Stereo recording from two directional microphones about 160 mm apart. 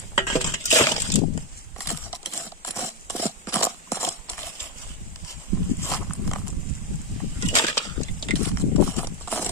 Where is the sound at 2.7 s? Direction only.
20° left (ahead or behind).